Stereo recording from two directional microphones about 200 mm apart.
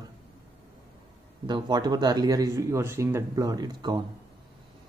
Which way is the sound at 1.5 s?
20° right (ahead or behind).